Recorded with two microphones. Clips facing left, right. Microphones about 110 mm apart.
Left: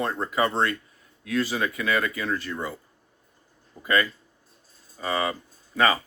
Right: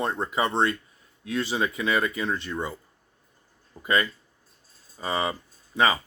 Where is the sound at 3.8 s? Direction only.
20° right (ahead or behind).